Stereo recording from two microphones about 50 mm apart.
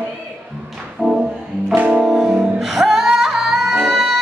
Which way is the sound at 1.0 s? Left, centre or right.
Centre.